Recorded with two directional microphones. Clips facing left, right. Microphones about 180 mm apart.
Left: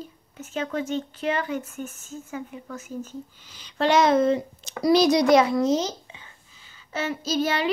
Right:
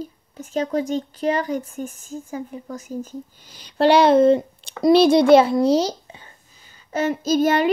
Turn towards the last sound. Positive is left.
turn(degrees=-45)  # may be behind; listen again after turning